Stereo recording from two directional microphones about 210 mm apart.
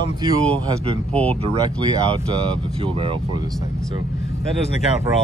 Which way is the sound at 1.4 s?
25° right (ahead or behind).